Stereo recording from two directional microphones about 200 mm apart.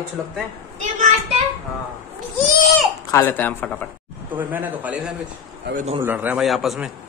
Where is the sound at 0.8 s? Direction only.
35° right (ahead or behind).